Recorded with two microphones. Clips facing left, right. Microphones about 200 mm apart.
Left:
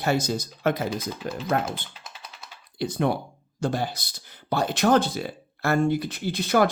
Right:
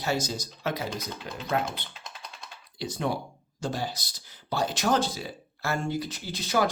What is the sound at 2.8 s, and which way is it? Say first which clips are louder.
Speech: left 5 dB; 55° left (ahead or behind).